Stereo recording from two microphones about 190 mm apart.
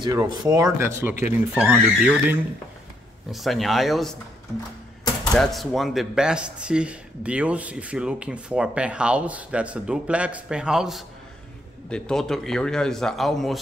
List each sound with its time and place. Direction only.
0.0 s speech: 20° right (ahead or behind)
3.3 s speech: centre (ahead or behind)
5.2 s speech: centre (ahead or behind)